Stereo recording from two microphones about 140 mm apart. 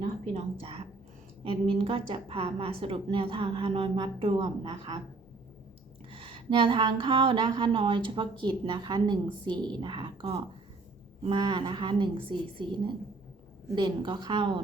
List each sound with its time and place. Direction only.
0.6 s speech: 40° right (ahead or behind)
6.1 s speech: 40° right (ahead or behind)